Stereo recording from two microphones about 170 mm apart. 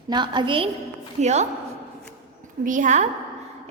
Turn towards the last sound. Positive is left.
turn(degrees=-45)  # may be behind; listen again after turning